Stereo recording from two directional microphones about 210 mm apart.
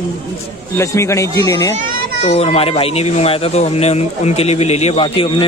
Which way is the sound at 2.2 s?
30° left (ahead or behind).